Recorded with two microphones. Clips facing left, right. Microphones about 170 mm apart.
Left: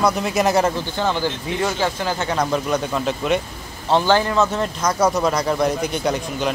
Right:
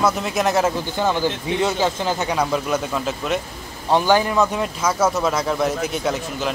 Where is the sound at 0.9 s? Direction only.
15° right (ahead or behind).